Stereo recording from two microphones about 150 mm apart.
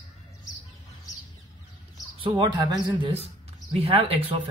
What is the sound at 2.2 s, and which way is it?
Speech, 30° right (ahead or behind).